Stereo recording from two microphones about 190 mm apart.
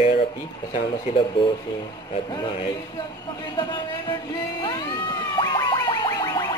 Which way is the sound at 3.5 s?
25° left (ahead or behind).